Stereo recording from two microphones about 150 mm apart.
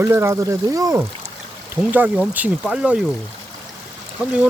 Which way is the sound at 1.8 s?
10° right (ahead or behind).